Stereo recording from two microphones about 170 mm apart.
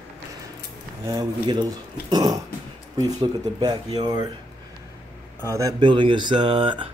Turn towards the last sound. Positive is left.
turn(degrees=-30)  # may be behind; listen again after turning